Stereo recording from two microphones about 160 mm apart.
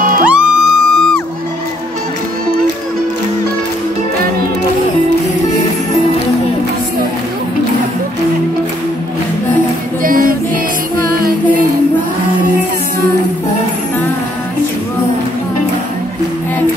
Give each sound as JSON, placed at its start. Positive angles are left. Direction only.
{"t": 0.2, "sound": "music", "side_deg": -5}
{"t": 10.0, "sound": "female singing", "side_deg": -60}
{"t": 11.1, "sound": "music", "side_deg": -70}